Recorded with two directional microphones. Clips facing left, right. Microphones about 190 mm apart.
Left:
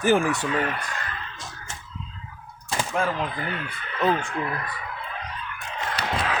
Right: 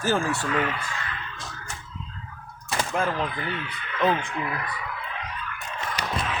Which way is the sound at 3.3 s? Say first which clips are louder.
Even; 40° left (ahead or behind).